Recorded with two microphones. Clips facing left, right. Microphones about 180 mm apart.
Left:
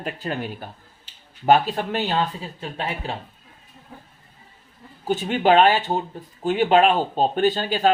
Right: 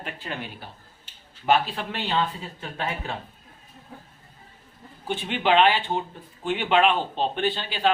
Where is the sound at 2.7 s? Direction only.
30° left (ahead or behind).